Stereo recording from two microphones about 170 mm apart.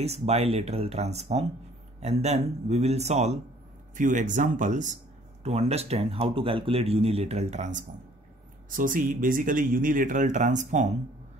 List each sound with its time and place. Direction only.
0.0 s speech: 40° right (ahead or behind)